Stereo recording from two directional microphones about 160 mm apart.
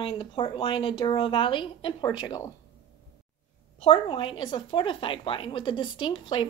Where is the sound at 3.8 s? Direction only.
35° left (ahead or behind).